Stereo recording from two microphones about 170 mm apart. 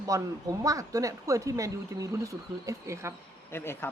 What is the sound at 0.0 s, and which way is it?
A woman's voice, 20° right (ahead or behind).